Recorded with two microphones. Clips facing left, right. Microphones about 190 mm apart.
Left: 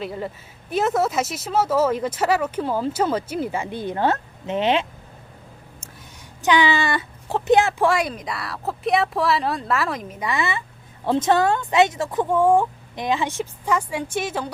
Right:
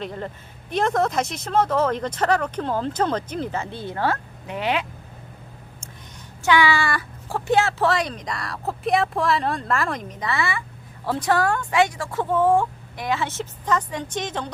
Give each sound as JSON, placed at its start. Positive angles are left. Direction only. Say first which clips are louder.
{"t": 0.0, "sound": "speech", "louder": "left 2 dB", "side_deg": 5}
{"t": 6.4, "sound": "speech", "louder": "left 1 dB", "side_deg": 20}